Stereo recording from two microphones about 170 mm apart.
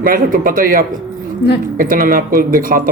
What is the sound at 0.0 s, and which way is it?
Speech, 55° right (ahead or behind).